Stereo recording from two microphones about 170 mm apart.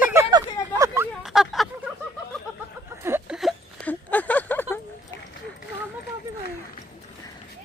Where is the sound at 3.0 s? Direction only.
15° right (ahead or behind).